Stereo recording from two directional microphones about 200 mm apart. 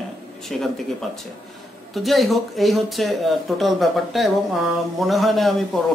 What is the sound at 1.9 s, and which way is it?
Speech, centre (ahead or behind).